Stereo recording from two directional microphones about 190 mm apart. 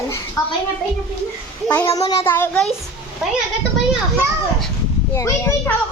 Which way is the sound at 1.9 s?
20° left (ahead or behind).